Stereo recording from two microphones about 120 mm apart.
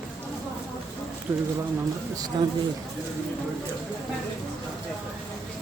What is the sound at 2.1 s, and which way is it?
Speech, 30° right (ahead or behind).